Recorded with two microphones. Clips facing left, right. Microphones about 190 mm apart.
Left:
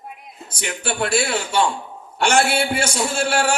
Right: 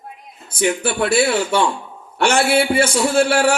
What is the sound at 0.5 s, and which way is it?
A man's voice, 55° right (ahead or behind).